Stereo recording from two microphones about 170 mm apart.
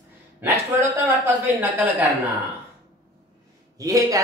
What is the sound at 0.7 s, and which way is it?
A man's voice, 10° right (ahead or behind).